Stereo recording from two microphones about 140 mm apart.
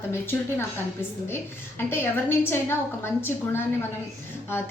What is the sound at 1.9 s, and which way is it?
A woman's voice, 15° left (ahead or behind).